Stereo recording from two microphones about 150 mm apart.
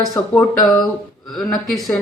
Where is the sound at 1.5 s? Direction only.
5° left (ahead or behind).